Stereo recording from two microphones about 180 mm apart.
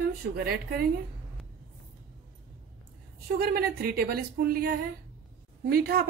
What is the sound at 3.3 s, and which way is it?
Speech, 55° right (ahead or behind).